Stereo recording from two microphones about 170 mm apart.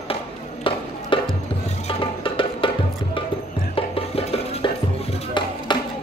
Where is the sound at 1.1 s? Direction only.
30° left (ahead or behind).